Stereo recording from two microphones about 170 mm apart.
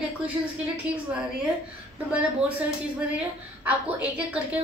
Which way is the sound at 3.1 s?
10° right (ahead or behind).